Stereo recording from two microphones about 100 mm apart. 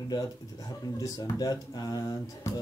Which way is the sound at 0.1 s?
40° left (ahead or behind).